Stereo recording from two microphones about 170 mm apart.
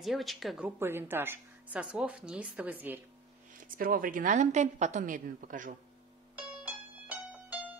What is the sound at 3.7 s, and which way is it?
A woman's voice, 55° right (ahead or behind).